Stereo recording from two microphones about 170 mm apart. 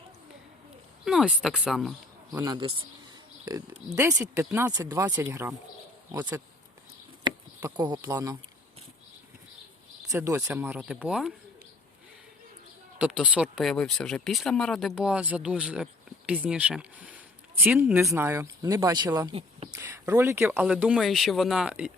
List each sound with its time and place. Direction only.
1.0 s speech: 5° right (ahead or behind)
2.4 s speech: 25° right (ahead or behind)
3.9 s speech: 20° right (ahead or behind)
7.3 s a sound: 25° right (ahead or behind)
7.9 s speech: 20° right (ahead or behind)
10.1 s speech: 15° right (ahead or behind)
13.0 s speech: 5° right (ahead or behind); by 19.6 s 35° right (ahead or behind)
19.7 s speech: 15° right (ahead or behind)